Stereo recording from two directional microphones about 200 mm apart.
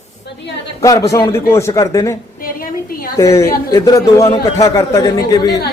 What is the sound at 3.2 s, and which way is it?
Speech, 15° left (ahead or behind).